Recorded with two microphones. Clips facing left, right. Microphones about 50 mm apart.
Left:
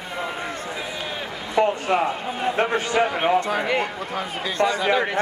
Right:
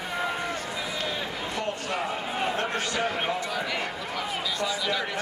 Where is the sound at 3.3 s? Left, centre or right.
Left.